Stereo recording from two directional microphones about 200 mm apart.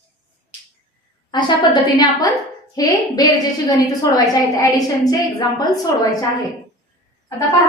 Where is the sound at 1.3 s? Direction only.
20° left (ahead or behind).